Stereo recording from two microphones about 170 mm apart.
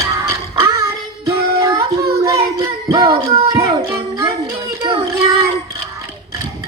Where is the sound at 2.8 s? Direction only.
25° right (ahead or behind).